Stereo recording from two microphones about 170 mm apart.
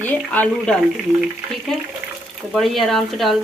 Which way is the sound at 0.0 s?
10° left (ahead or behind).